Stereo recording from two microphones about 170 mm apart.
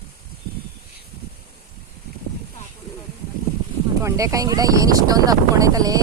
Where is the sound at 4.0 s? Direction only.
20° right (ahead or behind).